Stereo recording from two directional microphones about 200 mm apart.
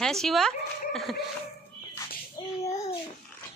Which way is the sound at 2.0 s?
15° left (ahead or behind).